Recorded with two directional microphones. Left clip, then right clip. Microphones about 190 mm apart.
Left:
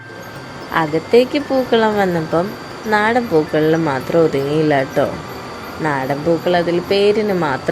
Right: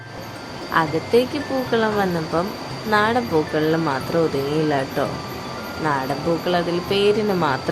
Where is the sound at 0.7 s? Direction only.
10° left (ahead or behind).